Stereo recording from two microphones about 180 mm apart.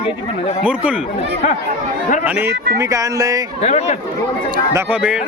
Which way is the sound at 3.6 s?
35° left (ahead or behind).